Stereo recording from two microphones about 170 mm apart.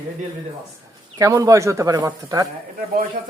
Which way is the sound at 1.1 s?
20° right (ahead or behind).